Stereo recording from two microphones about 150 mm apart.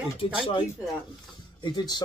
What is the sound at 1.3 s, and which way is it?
Speech, 30° left (ahead or behind).